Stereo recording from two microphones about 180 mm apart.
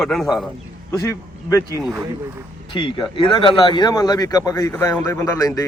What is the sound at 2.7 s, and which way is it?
Speech, 25° left (ahead or behind).